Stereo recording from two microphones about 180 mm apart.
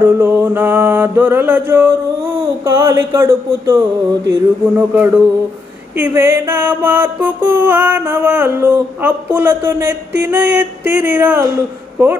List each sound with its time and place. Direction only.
0.0 s music: 15° right (ahead or behind)